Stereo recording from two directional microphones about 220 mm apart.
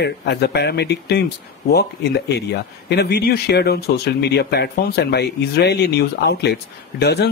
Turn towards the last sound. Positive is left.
turn(degrees=50)  # may be behind; listen again after turning